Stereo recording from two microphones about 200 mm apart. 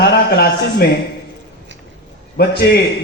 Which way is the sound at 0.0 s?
55° left (ahead or behind).